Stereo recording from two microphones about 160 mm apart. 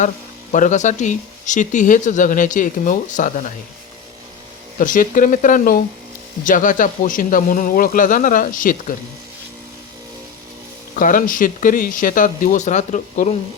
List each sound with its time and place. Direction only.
0.5 s speech: 50° left (ahead or behind)
4.8 s speech: 55° left (ahead or behind)
10.9 s speech: 55° left (ahead or behind)